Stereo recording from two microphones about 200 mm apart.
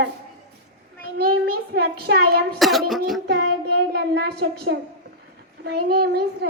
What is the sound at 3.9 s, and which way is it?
A woman's voice, 55° right (ahead or behind).